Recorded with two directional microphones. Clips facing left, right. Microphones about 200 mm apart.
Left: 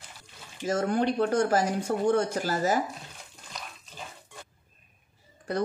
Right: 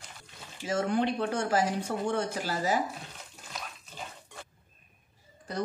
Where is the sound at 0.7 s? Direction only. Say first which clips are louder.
Left 2 dB; 45° left (ahead or behind).